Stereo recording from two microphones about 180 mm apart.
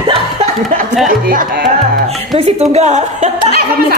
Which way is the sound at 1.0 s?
50° right (ahead or behind).